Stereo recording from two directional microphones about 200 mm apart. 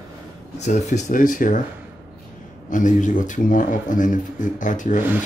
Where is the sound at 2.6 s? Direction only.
40° left (ahead or behind).